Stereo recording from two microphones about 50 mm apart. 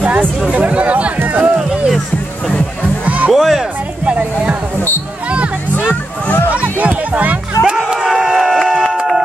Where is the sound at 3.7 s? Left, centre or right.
Right.